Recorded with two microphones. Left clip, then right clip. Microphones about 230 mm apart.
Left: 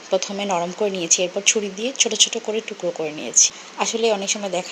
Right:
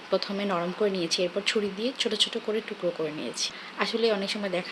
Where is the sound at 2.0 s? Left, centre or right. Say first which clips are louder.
Left 8 dB; right.